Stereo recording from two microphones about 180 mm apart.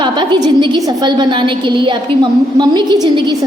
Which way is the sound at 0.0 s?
25° right (ahead or behind).